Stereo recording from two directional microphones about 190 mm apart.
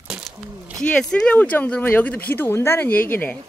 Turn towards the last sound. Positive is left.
turn(degrees=10)  # may be behind; listen again after turning